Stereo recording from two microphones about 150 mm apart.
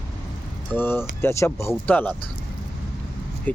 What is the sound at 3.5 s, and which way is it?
Speech, 10° left (ahead or behind).